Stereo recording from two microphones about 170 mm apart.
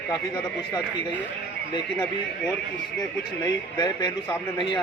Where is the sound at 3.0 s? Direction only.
25° left (ahead or behind).